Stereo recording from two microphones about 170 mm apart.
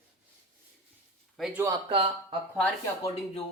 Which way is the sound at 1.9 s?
30° right (ahead or behind).